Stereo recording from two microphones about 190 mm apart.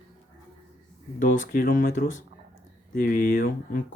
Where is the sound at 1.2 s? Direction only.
45° left (ahead or behind).